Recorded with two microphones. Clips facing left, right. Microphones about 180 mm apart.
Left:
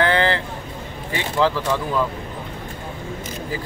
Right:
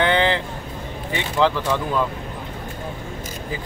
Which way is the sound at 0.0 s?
20° right (ahead or behind).